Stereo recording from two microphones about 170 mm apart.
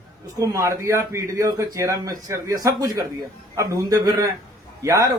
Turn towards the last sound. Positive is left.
turn(degrees=-20)  # may be behind; listen again after turning